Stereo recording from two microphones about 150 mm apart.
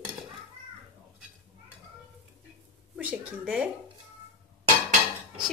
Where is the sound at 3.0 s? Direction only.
10° right (ahead or behind).